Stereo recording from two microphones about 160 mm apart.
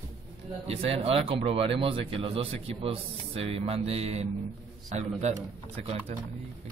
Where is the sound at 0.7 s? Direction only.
40° right (ahead or behind).